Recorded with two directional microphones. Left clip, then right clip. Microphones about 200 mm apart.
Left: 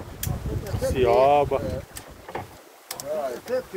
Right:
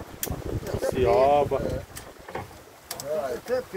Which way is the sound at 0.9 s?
15° left (ahead or behind).